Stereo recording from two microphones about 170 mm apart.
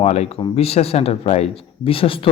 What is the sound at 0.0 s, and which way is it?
Speech, 40° left (ahead or behind).